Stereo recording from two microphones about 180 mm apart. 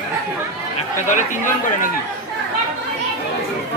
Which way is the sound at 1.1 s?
45° left (ahead or behind).